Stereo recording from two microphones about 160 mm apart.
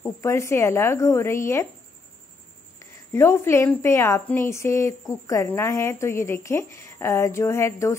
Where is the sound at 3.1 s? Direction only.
15° left (ahead or behind).